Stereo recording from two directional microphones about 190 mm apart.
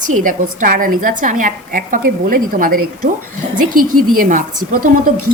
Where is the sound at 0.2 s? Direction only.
45° right (ahead or behind).